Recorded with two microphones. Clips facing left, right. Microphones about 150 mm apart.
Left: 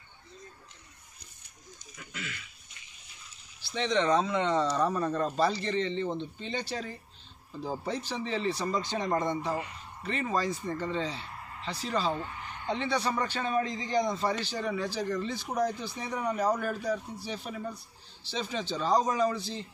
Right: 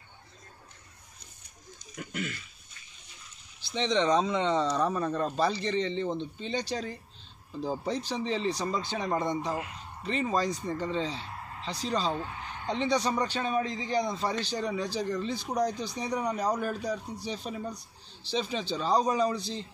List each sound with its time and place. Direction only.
2.0 s throat clearing: 45° right (ahead or behind)
3.7 s speech: 20° right (ahead or behind)
4.7 s a man's voice: centre (ahead or behind)
8.1 s a man's voice: 15° right (ahead or behind)
9.5 s speech: centre (ahead or behind)
10.0 s a man's voice: 15° right (ahead or behind)